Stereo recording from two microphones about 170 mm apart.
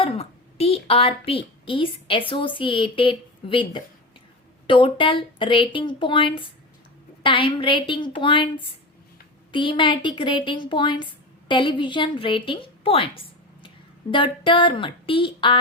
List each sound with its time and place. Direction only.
0.0 s a woman's voice: 35° left (ahead or behind)
9.5 s a woman's voice: 30° left (ahead or behind)